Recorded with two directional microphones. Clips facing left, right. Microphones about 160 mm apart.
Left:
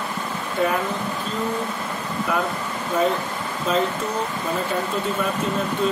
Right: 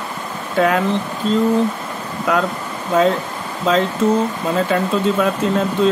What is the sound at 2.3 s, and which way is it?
Speech, 90° right.